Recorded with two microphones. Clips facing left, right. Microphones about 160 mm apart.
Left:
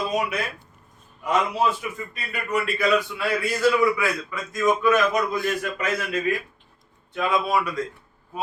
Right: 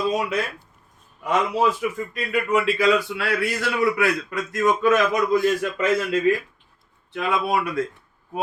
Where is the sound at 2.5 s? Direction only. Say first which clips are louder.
Right 2 dB; 90° right.